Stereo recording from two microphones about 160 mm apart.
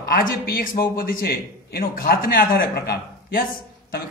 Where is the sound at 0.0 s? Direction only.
65° left (ahead or behind).